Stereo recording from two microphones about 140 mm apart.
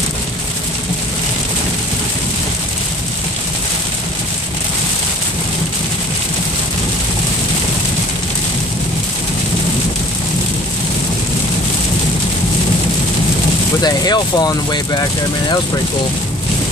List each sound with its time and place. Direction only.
13.7 s speech: 30° left (ahead or behind)